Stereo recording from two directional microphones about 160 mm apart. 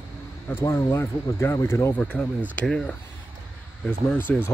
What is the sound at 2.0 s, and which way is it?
Speech, 5° left (ahead or behind).